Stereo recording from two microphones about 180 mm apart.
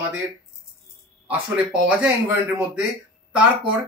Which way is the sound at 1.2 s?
5° right (ahead or behind).